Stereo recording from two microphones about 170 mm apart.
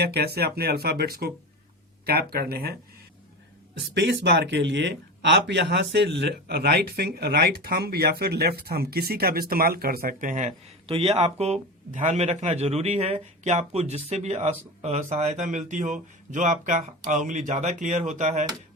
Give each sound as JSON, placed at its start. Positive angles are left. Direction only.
{"t": 0.0, "sound": "speech", "side_deg": -70}
{"t": 3.8, "sound": "speech", "side_deg": -85}
{"t": 10.8, "sound": "speech", "side_deg": -35}